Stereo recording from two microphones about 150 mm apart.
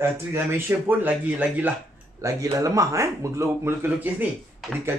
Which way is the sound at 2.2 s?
20° right (ahead or behind).